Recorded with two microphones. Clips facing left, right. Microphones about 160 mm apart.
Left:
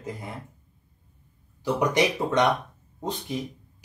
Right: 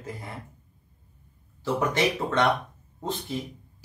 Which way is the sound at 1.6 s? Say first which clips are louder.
Left 2 dB; 15° left (ahead or behind).